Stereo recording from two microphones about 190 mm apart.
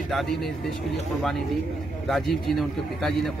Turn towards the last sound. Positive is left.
turn(degrees=0)  # may be behind; listen again after turning